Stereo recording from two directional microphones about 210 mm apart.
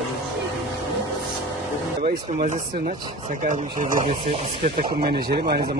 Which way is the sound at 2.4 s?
40° right (ahead or behind).